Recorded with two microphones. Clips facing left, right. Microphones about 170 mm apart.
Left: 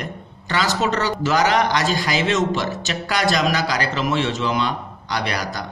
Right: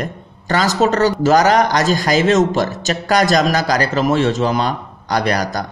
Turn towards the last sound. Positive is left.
turn(degrees=-45)  # may be behind; listen again after turning